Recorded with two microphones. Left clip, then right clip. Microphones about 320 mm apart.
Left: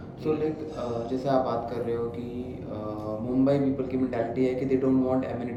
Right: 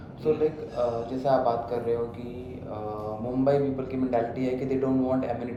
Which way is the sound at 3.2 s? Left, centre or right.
Centre.